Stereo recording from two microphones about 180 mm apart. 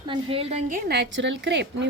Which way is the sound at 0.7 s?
65° right (ahead or behind).